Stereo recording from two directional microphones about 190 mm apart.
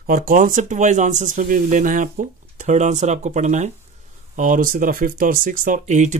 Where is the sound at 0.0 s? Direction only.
45° right (ahead or behind).